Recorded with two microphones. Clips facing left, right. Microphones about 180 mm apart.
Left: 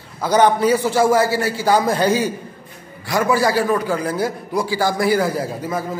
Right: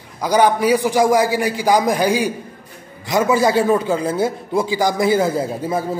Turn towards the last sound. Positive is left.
turn(degrees=-25)  # may be behind; listen again after turning